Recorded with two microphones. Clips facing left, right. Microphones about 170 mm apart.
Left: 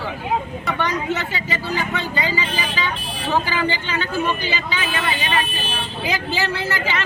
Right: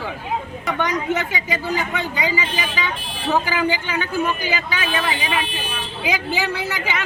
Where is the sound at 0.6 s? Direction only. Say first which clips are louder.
Right 1 dB; 15° right (ahead or behind).